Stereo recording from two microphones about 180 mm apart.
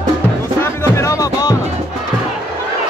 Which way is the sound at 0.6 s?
15° left (ahead or behind).